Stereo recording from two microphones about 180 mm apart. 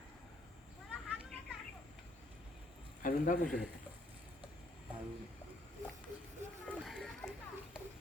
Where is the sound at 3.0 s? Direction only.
45° left (ahead or behind).